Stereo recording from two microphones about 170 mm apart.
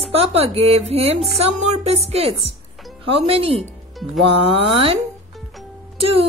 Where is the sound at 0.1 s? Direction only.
35° right (ahead or behind).